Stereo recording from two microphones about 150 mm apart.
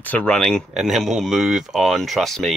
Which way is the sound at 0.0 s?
10° left (ahead or behind).